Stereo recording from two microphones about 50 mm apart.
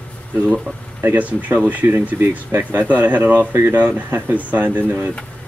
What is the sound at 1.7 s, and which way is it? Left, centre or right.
Speech, right.